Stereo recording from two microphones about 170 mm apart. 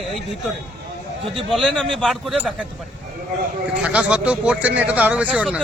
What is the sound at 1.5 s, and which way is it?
Speech, centre (ahead or behind).